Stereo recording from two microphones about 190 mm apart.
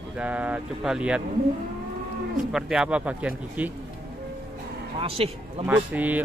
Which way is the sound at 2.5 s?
5° right (ahead or behind).